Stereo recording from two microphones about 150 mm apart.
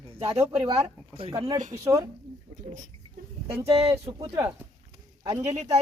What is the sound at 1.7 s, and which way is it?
Speech, 25° right (ahead or behind).